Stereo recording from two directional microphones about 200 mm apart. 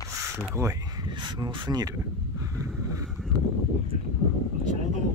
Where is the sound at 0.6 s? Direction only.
15° right (ahead or behind).